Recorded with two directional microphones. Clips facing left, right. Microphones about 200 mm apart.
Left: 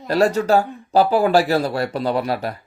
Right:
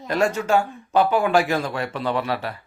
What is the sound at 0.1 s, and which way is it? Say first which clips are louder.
A man's voice: left 4 dB; 35° left (ahead or behind).